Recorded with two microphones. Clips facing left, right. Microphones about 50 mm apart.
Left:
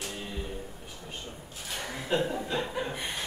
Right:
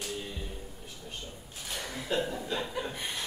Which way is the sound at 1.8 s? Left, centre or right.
Left.